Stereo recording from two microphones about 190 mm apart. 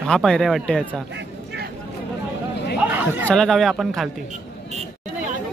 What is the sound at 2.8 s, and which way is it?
Chatter, 10° right (ahead or behind).